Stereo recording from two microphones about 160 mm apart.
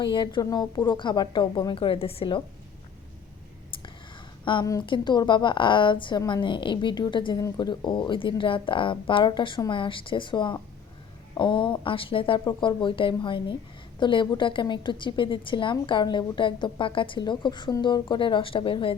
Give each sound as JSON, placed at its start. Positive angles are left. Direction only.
{"t": 0.0, "sound": "a woman's voice", "side_deg": 30}
{"t": 4.4, "sound": "a woman's voice", "side_deg": 25}